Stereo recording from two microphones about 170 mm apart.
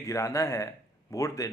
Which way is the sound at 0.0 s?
20° left (ahead or behind).